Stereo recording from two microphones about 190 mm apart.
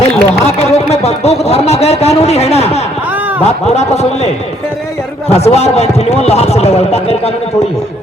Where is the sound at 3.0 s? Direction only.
10° right (ahead or behind).